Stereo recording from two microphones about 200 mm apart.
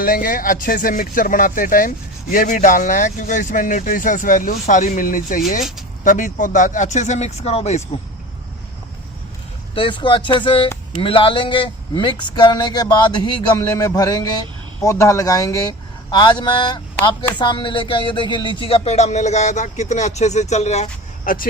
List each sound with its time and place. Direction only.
0.0 s speech: 45° left (ahead or behind)
9.7 s speech: 25° left (ahead or behind)